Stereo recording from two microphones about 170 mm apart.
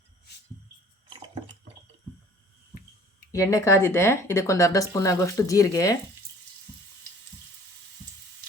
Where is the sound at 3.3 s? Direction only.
20° left (ahead or behind).